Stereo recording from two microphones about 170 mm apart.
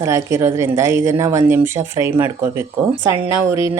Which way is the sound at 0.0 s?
15° right (ahead or behind).